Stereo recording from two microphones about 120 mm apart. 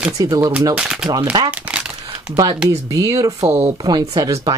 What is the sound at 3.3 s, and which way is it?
Speech, 65° right (ahead or behind).